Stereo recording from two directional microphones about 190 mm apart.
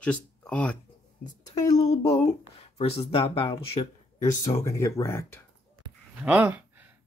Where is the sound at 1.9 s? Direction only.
15° left (ahead or behind).